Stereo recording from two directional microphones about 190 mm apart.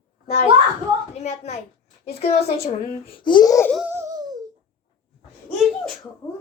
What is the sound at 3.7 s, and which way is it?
Speech, centre (ahead or behind).